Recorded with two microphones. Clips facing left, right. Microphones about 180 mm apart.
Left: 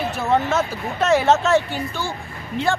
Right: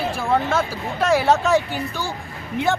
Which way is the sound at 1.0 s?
10° right (ahead or behind).